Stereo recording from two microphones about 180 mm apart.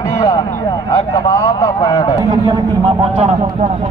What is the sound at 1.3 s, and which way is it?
Speech, 20° left (ahead or behind).